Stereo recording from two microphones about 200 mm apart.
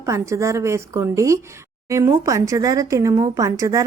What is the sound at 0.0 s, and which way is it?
Speech, 15° right (ahead or behind).